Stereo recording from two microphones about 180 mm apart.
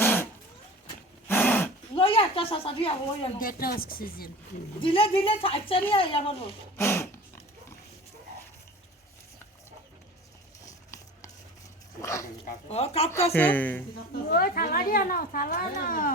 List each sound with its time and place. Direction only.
0.0 s cat: 15° left (ahead or behind)
1.3 s a sound: 10° left (ahead or behind)
2.0 s a woman's voice: 30° left (ahead or behind)
3.4 s a woman's voice: 55° left (ahead or behind)
4.8 s a woman's voice: 30° left (ahead or behind)
6.7 s dog: 15° left (ahead or behind)
10.7 s a sound: 15° left (ahead or behind)
12.0 s dog: 15° left (ahead or behind)
12.6 s speech: 35° left (ahead or behind)
13.3 s a woman's voice: 10° left (ahead or behind)
14.3 s a woman's voice: 55° left (ahead or behind)